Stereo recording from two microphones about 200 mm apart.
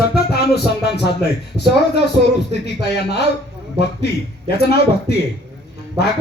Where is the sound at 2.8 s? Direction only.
55° left (ahead or behind).